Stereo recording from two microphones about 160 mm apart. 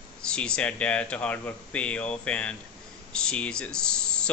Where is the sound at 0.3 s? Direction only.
5° left (ahead or behind).